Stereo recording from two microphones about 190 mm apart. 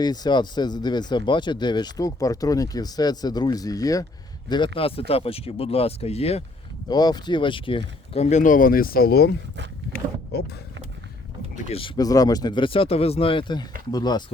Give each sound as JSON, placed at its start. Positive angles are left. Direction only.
{"t": 0.0, "sound": "speech", "side_deg": 20}
{"t": 6.8, "sound": "speech", "side_deg": 20}
{"t": 9.9, "sound": "vehicle", "side_deg": 60}
{"t": 11.5, "sound": "speech", "side_deg": 30}
{"t": 11.9, "sound": "speech", "side_deg": 20}